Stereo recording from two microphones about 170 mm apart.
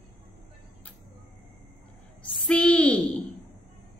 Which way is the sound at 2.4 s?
5° left (ahead or behind).